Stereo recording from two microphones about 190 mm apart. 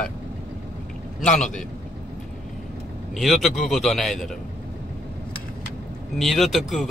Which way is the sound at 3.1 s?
Centre (ahead or behind).